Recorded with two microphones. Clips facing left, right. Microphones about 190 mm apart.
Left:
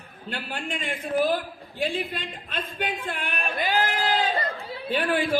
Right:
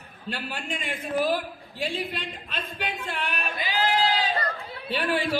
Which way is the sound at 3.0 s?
55° left (ahead or behind).